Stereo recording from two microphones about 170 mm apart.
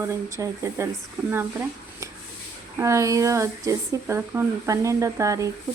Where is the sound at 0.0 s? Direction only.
15° right (ahead or behind).